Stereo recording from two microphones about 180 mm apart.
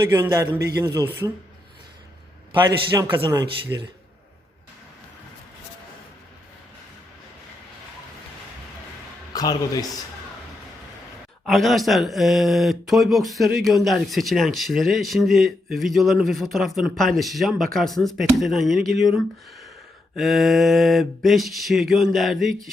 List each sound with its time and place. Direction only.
0.1 s a man's voice: 15° right (ahead or behind)
2.5 s a man's voice: 25° right (ahead or behind)
9.3 s a man's voice: 20° left (ahead or behind)
11.4 s speech: centre (ahead or behind)